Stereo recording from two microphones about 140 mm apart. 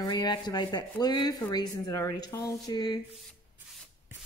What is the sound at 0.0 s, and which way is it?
A woman's voice, 30° left (ahead or behind).